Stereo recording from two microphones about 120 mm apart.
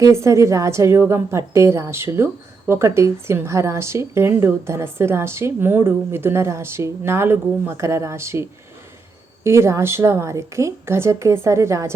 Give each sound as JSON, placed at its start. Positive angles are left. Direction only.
{"t": 0.0, "sound": "a woman's voice", "side_deg": -25}